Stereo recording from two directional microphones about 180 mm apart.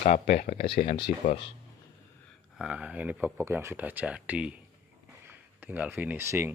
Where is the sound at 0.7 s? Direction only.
35° left (ahead or behind).